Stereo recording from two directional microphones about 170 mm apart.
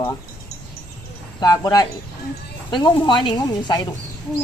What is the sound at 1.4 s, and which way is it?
Speech, 20° left (ahead or behind).